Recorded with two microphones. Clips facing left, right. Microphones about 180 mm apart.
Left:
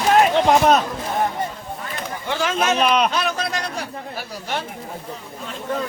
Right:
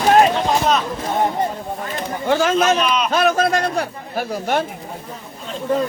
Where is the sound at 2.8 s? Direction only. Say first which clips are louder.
Left 2 dB; 60° left (ahead or behind).